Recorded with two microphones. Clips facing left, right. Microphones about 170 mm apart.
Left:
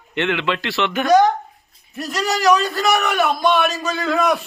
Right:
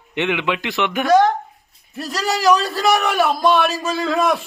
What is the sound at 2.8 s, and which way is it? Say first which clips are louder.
Speech: right 1 dB; 30° right (ahead or behind).